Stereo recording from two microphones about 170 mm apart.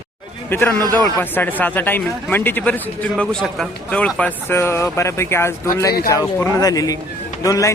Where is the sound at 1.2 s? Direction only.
10° left (ahead or behind).